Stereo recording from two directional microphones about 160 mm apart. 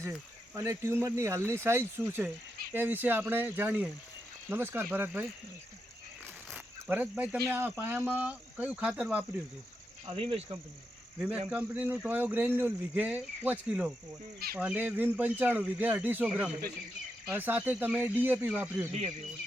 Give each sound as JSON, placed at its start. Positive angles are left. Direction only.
{"t": 0.0, "sound": "speech", "side_deg": -15}
{"t": 6.5, "sound": "cricket", "side_deg": -10}
{"t": 7.3, "sound": "speech", "side_deg": -15}
{"t": 10.1, "sound": "speech", "side_deg": -40}
{"t": 11.2, "sound": "speech", "side_deg": -10}